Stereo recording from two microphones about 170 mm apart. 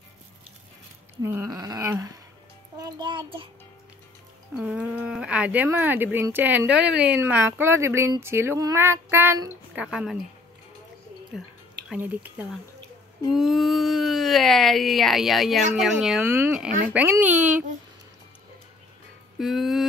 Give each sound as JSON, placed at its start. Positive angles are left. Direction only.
{"t": 1.2, "sound": "a sound", "side_deg": -15}
{"t": 2.8, "sound": "child singing", "side_deg": -25}
{"t": 4.6, "sound": "speech", "side_deg": -5}
{"t": 9.8, "sound": "speech", "side_deg": -5}
{"t": 11.3, "sound": "speech", "side_deg": -5}
{"t": 16.3, "sound": "speech", "side_deg": -15}
{"t": 19.3, "sound": "a sound", "side_deg": 0}